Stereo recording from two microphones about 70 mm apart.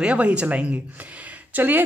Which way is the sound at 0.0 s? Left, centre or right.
Centre.